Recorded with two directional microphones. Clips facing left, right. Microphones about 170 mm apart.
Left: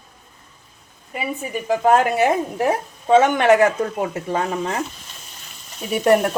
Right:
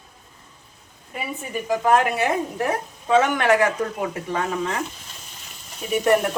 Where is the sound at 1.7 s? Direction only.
25° left (ahead or behind).